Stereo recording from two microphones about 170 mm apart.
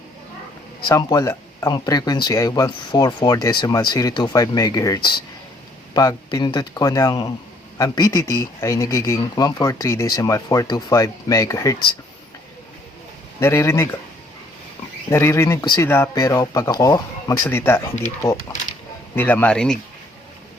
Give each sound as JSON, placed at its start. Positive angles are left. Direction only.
{"t": 0.9, "sound": "speech", "side_deg": 20}
{"t": 13.4, "sound": "speech", "side_deg": 15}
{"t": 15.1, "sound": "speech", "side_deg": 15}